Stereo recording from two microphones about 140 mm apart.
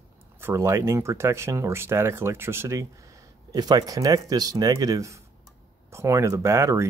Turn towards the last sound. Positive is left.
turn(degrees=-20)  # may be behind; listen again after turning